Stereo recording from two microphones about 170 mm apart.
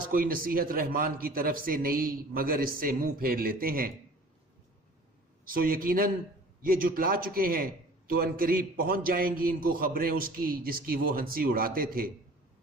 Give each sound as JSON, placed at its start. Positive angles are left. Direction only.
{"t": 0.1, "sound": "a man's voice", "side_deg": -55}
{"t": 5.5, "sound": "a man's voice", "side_deg": -55}